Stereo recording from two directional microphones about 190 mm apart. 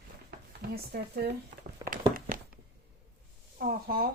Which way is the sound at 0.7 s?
60° right (ahead or behind).